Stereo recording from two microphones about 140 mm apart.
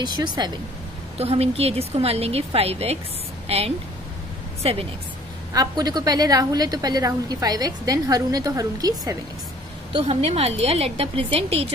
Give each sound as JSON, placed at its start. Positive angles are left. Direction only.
{"t": 0.0, "sound": "speech", "side_deg": -30}
{"t": 1.1, "sound": "a woman's voice", "side_deg": -45}
{"t": 5.5, "sound": "a woman's voice", "side_deg": -30}
{"t": 9.9, "sound": "a woman's voice", "side_deg": -45}